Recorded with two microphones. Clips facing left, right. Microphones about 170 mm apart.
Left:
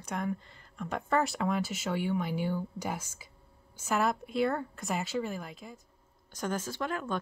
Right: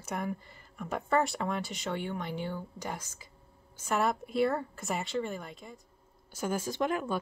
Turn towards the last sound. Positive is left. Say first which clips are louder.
# right 3 dB
turn(degrees=-15)  # may be behind; listen again after turning